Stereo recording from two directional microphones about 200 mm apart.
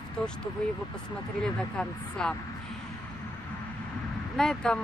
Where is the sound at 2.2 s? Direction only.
5° left (ahead or behind).